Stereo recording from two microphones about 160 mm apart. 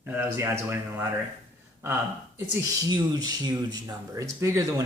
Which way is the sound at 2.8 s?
25° right (ahead or behind).